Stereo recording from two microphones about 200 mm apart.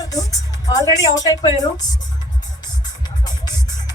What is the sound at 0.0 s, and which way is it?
Music, 15° left (ahead or behind).